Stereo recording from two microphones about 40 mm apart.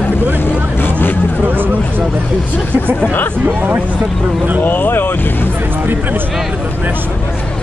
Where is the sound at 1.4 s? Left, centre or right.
Right.